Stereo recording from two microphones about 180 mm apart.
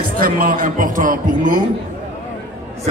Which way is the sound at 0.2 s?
50° right (ahead or behind).